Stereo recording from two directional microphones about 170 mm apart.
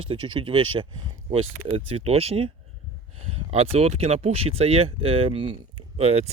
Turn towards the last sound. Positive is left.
turn(degrees=-35)  # may be behind; listen again after turning